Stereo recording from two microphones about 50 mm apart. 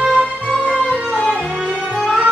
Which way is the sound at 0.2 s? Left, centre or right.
Centre.